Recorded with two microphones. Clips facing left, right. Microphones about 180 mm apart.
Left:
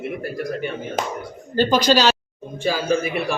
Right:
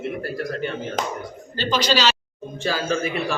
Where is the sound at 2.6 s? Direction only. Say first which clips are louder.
Left 3 dB; 10° left (ahead or behind).